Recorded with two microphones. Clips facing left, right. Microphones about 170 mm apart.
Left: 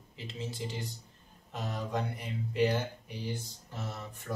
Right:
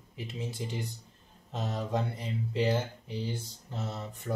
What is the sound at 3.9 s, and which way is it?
Speech, 20° right (ahead or behind).